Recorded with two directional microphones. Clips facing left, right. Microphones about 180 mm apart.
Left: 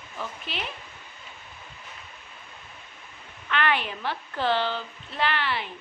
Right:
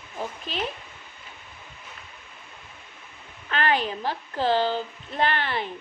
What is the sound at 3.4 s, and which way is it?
A child's voice, 35° right (ahead or behind).